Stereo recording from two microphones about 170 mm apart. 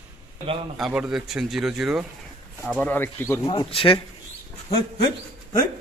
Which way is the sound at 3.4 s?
30° left (ahead or behind).